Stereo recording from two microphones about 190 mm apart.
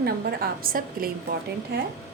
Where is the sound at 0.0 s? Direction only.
55° right (ahead or behind).